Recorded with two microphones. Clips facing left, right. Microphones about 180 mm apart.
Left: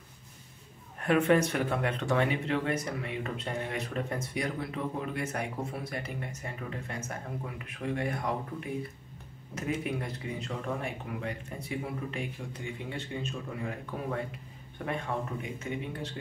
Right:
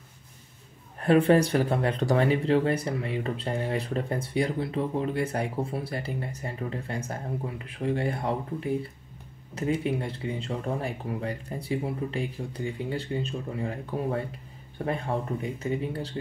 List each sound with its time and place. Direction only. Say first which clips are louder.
1.0 s speech: right 4 dB; 35° right (ahead or behind)